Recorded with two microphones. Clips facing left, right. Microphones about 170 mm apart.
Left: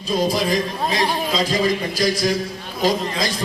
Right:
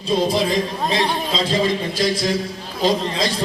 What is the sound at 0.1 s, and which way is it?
A man's voice, 25° right (ahead or behind).